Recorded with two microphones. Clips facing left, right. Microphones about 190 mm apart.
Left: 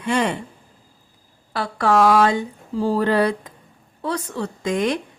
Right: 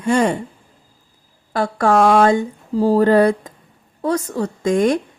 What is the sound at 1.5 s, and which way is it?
A woman's voice, 45° right (ahead or behind).